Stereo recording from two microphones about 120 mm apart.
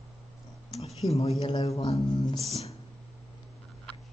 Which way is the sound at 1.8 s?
55° left (ahead or behind).